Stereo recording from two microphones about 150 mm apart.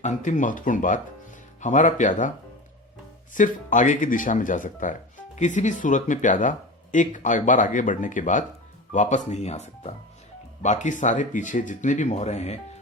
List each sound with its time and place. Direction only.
0.0 s speech: 55° left (ahead or behind)
3.3 s speech: 60° left (ahead or behind)